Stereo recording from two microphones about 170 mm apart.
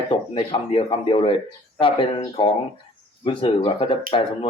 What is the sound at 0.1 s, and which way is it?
A man's voice, 35° left (ahead or behind).